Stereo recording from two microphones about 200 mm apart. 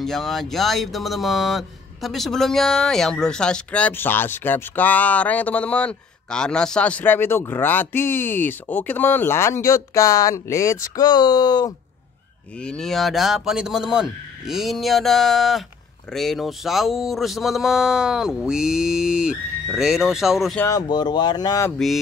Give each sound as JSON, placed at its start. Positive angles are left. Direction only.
{"t": 0.0, "sound": "speech", "side_deg": 0}
{"t": 12.5, "sound": "speech", "side_deg": 5}
{"t": 20.6, "sound": "speech", "side_deg": 20}